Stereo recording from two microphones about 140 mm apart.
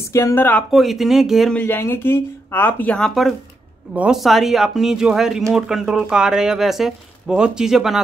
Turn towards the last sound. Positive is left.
turn(degrees=-5)  # may be behind; listen again after turning